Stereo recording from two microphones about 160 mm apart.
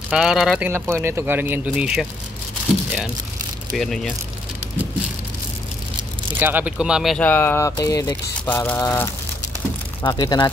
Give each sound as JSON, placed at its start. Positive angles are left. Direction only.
{"t": 0.1, "sound": "speech", "side_deg": -5}
{"t": 0.7, "sound": "speech", "side_deg": -15}
{"t": 3.7, "sound": "speech", "side_deg": 0}
{"t": 6.4, "sound": "speech", "side_deg": -10}
{"t": 7.2, "sound": "speech", "side_deg": 15}